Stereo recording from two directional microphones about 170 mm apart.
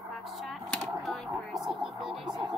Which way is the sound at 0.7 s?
Centre (ahead or behind).